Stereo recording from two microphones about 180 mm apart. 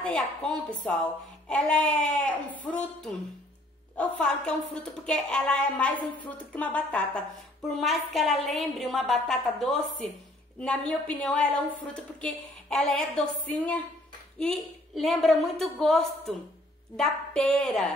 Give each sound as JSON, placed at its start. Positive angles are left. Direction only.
{"t": 0.0, "sound": "a woman's voice", "side_deg": 5}